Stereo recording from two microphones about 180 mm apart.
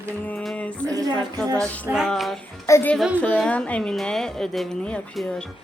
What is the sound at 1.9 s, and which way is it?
Speech, centre (ahead or behind).